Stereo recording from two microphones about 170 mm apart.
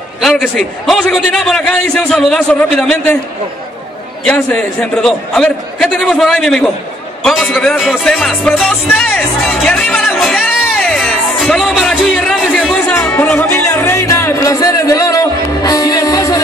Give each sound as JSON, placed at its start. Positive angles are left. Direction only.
{"t": 0.2, "sound": "a man's voice", "side_deg": 0}
{"t": 4.2, "sound": "a man's voice", "side_deg": 10}